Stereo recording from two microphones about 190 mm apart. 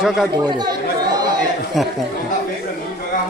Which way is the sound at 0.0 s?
Centre (ahead or behind).